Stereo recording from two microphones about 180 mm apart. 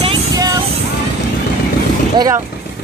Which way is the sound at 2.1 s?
20° right (ahead or behind).